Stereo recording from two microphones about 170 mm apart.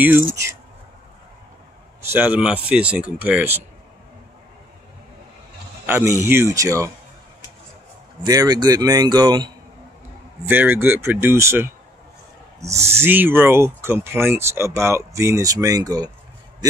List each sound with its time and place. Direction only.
2.0 s speech: 10° right (ahead or behind)
5.9 s speech: 15° right (ahead or behind)
8.2 s speech: 20° right (ahead or behind)
10.4 s speech: 10° right (ahead or behind)
12.9 s speech: 10° right (ahead or behind)